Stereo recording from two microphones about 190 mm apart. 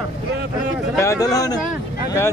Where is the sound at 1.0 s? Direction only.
15° left (ahead or behind).